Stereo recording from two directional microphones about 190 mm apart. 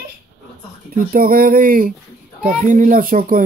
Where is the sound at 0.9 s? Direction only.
50° right (ahead or behind).